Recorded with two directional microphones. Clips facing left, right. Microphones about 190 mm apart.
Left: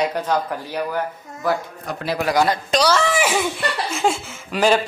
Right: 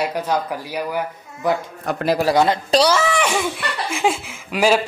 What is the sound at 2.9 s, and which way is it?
Speech, 5° right (ahead or behind).